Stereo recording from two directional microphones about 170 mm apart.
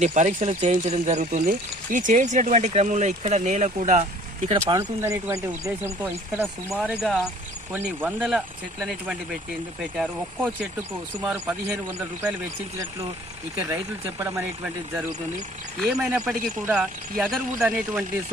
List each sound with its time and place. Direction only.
0.0 s speech: 45° right (ahead or behind)
4.5 s speech: 20° right (ahead or behind); by 10.7 s 5° right (ahead or behind)
11.7 s speech: 10° right (ahead or behind)
13.6 s speech: 20° right (ahead or behind)
15.8 s speech: 5° right (ahead or behind)